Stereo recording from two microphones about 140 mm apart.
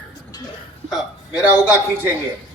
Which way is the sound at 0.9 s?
5° right (ahead or behind).